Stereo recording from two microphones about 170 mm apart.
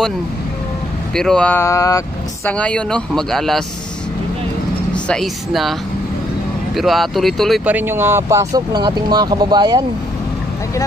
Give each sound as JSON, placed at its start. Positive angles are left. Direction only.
{"t": 1.1, "sound": "speech", "side_deg": 5}
{"t": 2.4, "sound": "speech", "side_deg": 5}
{"t": 4.9, "sound": "speech", "side_deg": 5}
{"t": 7.7, "sound": "speech", "side_deg": -15}